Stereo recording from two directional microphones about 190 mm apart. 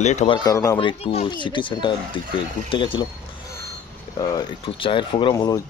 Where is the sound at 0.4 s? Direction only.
15° left (ahead or behind).